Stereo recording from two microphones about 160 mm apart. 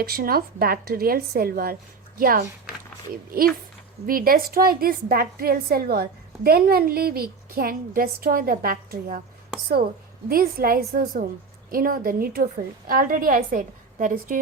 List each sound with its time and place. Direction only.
0.0 s a woman's voice: 70° right (ahead or behind)
10.2 s a woman's voice: 65° right (ahead or behind)